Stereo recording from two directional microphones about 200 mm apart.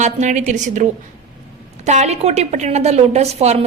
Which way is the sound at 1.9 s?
35° right (ahead or behind).